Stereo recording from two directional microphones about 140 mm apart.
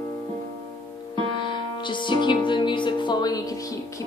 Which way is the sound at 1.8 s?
35° left (ahead or behind).